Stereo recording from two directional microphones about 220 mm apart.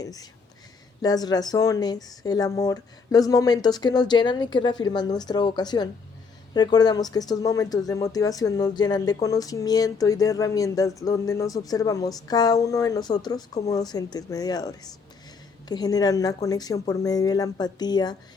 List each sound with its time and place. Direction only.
0.0 s speech: 15° left (ahead or behind)